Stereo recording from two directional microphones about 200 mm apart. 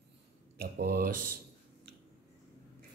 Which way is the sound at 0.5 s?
50° right (ahead or behind).